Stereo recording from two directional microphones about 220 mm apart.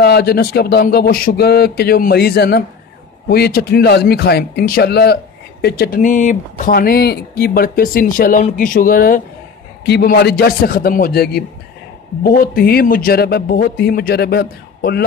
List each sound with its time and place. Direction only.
0.0 s a man's voice: 45° left (ahead or behind)